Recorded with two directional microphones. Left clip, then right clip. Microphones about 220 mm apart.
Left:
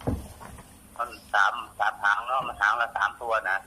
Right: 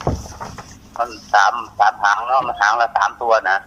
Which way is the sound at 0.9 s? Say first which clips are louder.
Right 9 dB; 25° right (ahead or behind).